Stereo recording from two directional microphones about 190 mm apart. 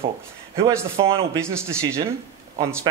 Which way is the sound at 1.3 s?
15° right (ahead or behind).